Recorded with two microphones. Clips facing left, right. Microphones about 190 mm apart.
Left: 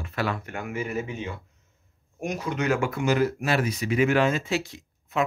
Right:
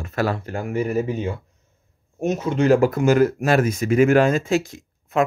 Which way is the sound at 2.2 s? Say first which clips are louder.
Right 8 dB; 25° right (ahead or behind).